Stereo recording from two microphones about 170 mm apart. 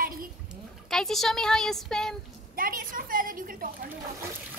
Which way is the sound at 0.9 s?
Centre (ahead or behind).